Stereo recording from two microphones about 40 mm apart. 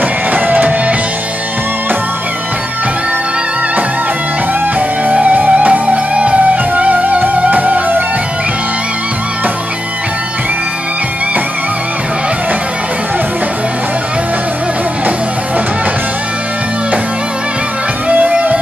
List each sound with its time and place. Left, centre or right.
0.3 s music: right
4.7 s music: right
18.0 s music: right